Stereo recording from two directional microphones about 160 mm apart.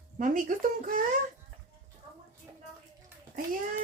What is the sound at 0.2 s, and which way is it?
Speech, 55° right (ahead or behind).